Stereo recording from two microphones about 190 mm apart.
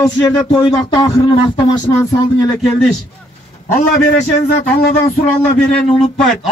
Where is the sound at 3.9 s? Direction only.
40° left (ahead or behind).